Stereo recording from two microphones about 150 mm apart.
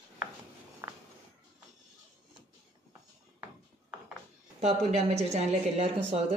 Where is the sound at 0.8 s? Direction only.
15° right (ahead or behind).